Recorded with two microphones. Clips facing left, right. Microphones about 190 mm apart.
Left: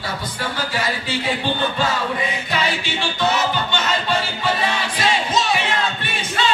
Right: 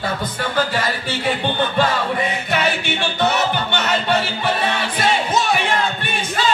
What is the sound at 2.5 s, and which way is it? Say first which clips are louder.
Music: right 3 dB; 60° right (ahead or behind).